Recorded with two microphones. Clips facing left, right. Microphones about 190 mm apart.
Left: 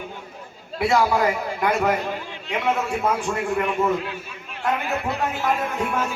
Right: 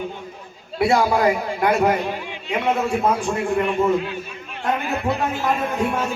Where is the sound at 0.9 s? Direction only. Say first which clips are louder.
Right 2 dB; 30° right (ahead or behind).